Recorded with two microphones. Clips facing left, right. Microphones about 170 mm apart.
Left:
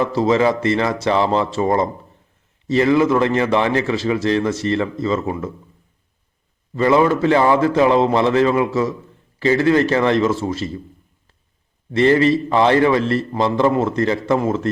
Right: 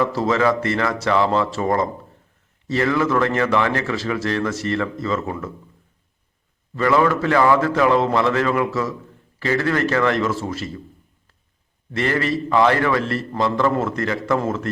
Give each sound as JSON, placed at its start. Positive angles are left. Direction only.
{"t": 0.0, "sound": "a man's voice", "side_deg": 20}
{"t": 6.7, "sound": "a man's voice", "side_deg": 20}
{"t": 11.9, "sound": "a man's voice", "side_deg": 20}